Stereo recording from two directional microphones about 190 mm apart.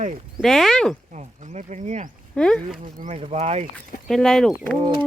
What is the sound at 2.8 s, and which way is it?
Speech, 40° right (ahead or behind).